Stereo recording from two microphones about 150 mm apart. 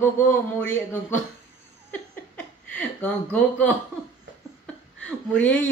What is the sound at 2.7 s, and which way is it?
Speech, 10° left (ahead or behind).